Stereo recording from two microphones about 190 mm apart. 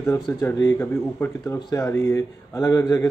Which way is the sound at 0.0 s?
15° left (ahead or behind).